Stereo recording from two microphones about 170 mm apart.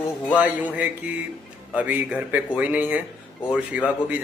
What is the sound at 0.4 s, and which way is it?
Speech, 10° right (ahead or behind).